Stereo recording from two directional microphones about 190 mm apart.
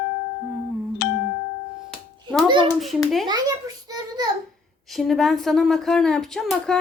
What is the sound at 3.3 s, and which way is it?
A child's voice, 20° right (ahead or behind).